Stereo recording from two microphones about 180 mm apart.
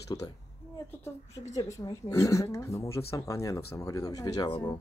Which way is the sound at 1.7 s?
15° left (ahead or behind).